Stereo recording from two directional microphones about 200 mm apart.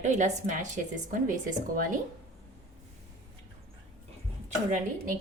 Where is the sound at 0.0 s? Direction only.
40° right (ahead or behind).